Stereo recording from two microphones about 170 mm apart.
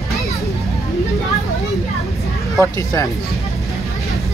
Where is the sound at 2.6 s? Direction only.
20° left (ahead or behind).